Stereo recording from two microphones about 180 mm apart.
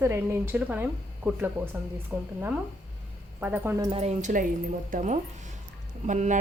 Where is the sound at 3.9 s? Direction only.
35° right (ahead or behind).